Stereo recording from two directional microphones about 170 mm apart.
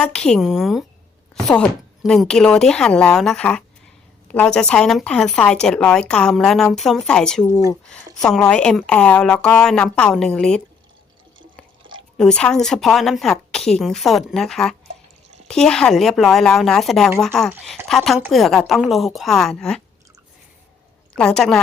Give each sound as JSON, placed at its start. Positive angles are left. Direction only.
{"t": 0.0, "sound": "a woman's voice", "side_deg": 5}
{"t": 2.0, "sound": "a woman's voice", "side_deg": 5}
{"t": 11.8, "sound": "chewing", "side_deg": -30}
{"t": 12.1, "sound": "a woman's voice", "side_deg": 5}
{"t": 21.2, "sound": "a woman's voice", "side_deg": 5}